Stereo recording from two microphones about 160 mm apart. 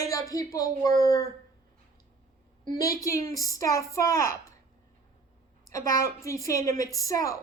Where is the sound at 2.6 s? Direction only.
20° left (ahead or behind).